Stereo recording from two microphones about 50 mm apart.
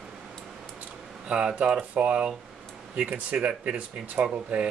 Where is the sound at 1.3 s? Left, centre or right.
Right.